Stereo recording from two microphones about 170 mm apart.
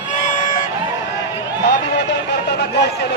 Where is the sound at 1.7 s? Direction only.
90° left.